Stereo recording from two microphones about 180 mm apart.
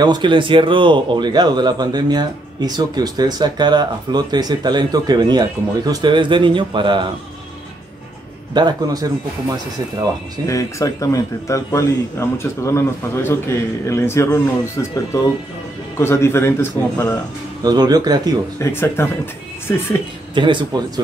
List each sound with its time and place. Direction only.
0.0 s speech: 25° right (ahead or behind)
8.5 s speech: 20° right (ahead or behind)
10.4 s a man's voice: 15° left (ahead or behind)
17.6 s speech: 20° right (ahead or behind)
18.6 s a man's voice: 15° left (ahead or behind)
20.3 s speech: 25° right (ahead or behind)